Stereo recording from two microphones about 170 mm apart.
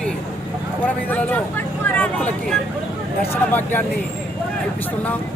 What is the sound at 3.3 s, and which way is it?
Speech, 10° left (ahead or behind).